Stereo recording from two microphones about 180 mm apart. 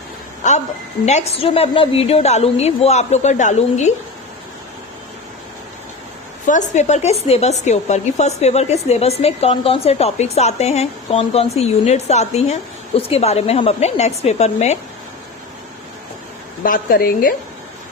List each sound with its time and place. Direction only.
0.4 s a woman's voice: 45° left (ahead or behind)
6.5 s speech: 40° left (ahead or behind)
16.6 s a woman's voice: 50° left (ahead or behind)